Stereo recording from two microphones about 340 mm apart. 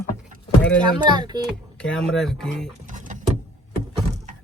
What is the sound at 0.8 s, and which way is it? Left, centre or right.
Speech, centre.